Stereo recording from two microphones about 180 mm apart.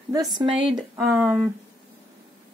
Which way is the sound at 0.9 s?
5° right (ahead or behind).